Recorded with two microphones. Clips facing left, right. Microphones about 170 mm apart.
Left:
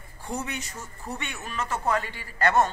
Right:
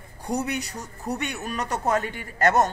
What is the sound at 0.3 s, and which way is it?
A man's voice, 40° right (ahead or behind).